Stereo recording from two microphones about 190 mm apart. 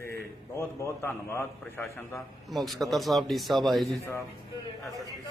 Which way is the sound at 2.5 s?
Centre (ahead or behind).